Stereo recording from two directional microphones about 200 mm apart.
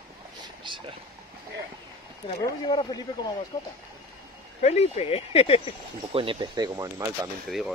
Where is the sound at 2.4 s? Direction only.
25° left (ahead or behind).